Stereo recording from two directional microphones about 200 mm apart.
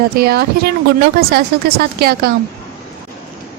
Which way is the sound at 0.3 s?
55° right (ahead or behind).